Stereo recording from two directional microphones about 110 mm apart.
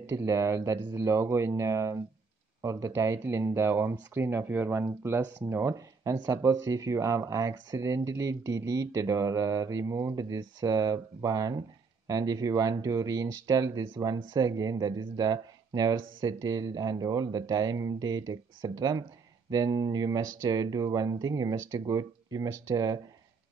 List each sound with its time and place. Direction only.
0.0 s speech: 25° right (ahead or behind)